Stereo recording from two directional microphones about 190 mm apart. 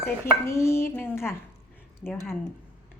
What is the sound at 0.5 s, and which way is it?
A woman's voice, 15° left (ahead or behind).